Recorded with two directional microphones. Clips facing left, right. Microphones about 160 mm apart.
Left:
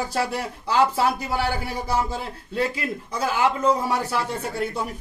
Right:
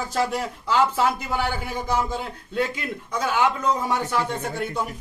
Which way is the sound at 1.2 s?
35° left (ahead or behind).